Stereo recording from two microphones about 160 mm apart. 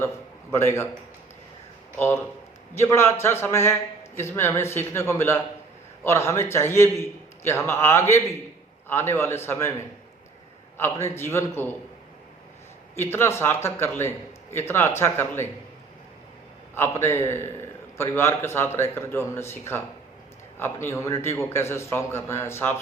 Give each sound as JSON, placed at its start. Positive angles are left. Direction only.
{"t": 0.5, "sound": "a man's voice", "side_deg": 15}
{"t": 2.7, "sound": "a man's voice", "side_deg": 15}
{"t": 10.8, "sound": "a man's voice", "side_deg": 15}
{"t": 13.0, "sound": "a man's voice", "side_deg": 15}
{"t": 16.7, "sound": "a man's voice", "side_deg": 15}